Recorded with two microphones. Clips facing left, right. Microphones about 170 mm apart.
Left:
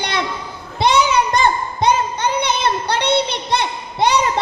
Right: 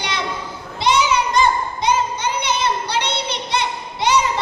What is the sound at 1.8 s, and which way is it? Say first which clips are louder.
Music: left 5 dB; 60° left (ahead or behind).